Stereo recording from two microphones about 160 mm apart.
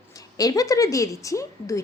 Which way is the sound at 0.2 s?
20° left (ahead or behind).